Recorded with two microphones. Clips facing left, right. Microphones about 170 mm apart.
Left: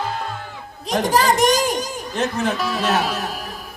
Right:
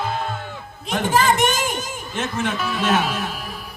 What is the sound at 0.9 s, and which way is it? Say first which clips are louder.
Music: left 1 dB; 35° left (ahead or behind).